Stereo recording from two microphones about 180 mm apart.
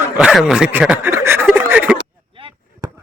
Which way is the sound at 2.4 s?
30° right (ahead or behind).